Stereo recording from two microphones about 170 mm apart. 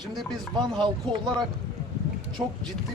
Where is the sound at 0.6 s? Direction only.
25° right (ahead or behind).